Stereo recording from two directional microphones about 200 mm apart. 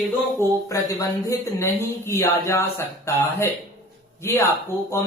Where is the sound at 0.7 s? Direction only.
15° left (ahead or behind).